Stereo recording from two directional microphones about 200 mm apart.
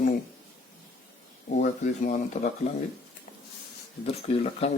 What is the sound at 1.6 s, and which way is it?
Speech, 40° left (ahead or behind).